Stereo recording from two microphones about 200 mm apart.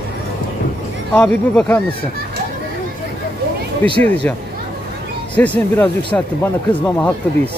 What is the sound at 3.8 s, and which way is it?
Speech, 5° left (ahead or behind).